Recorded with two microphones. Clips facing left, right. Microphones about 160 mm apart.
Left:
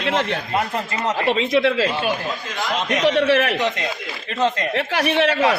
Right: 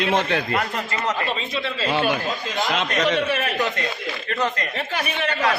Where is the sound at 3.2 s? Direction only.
75° left (ahead or behind).